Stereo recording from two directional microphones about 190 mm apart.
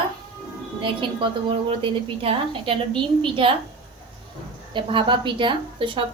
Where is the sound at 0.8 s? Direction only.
25° right (ahead or behind).